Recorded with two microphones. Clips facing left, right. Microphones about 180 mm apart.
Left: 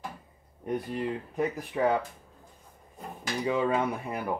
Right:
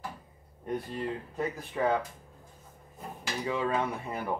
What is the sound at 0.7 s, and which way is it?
Speech, 20° left (ahead or behind).